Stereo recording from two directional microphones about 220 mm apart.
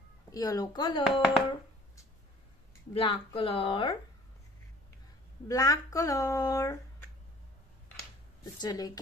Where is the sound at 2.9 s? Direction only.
25° left (ahead or behind).